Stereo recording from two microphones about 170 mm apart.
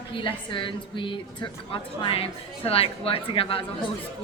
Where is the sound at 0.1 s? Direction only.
30° left (ahead or behind).